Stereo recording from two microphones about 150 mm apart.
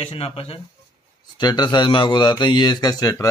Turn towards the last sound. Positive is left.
turn(degrees=25)  # may be behind; listen again after turning